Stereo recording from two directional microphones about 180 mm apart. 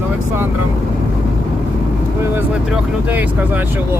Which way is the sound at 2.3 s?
5° right (ahead or behind).